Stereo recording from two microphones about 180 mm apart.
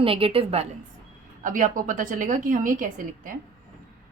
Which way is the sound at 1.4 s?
45° right (ahead or behind).